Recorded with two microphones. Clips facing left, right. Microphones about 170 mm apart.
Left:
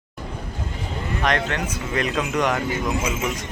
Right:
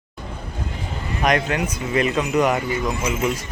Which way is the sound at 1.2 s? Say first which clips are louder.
Right 4 dB; 10° right (ahead or behind).